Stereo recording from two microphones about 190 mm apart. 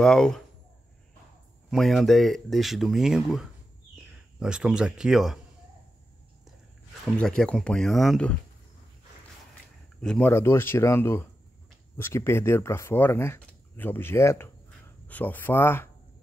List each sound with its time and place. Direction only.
0.0 s speech: 5° left (ahead or behind)
1.7 s speech: centre (ahead or behind)
7.2 s speech: 5° left (ahead or behind)
9.9 s speech: 5° left (ahead or behind)